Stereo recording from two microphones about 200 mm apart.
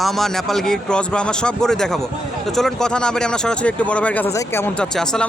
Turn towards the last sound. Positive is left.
turn(degrees=5)  # may be behind; listen again after turning